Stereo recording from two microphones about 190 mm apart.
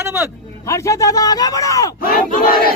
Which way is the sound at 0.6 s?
15° left (ahead or behind).